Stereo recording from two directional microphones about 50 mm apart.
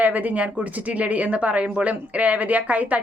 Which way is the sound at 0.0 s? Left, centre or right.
Right.